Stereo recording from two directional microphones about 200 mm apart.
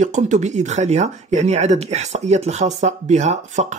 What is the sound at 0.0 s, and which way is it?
Speech, 35° right (ahead or behind).